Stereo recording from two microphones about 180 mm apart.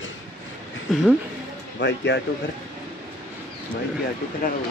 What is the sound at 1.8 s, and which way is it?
Speech, 75° left (ahead or behind).